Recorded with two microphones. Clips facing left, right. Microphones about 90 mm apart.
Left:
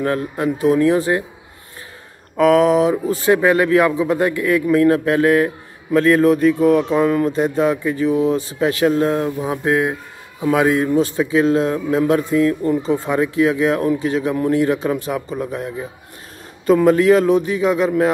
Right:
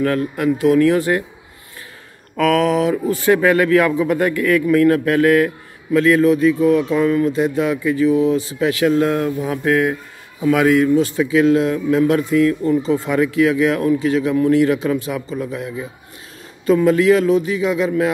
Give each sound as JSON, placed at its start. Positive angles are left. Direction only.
{"t": 0.0, "sound": "speech", "side_deg": 25}
{"t": 2.3, "sound": "speech", "side_deg": 25}
{"t": 5.9, "sound": "speech", "side_deg": 40}